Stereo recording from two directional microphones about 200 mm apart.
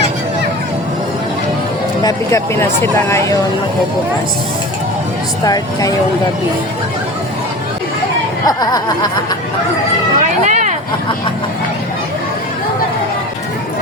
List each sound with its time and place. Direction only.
2.0 s speech: 15° left (ahead or behind)
8.4 s speech: 20° left (ahead or behind)
10.2 s a sound: 40° right (ahead or behind)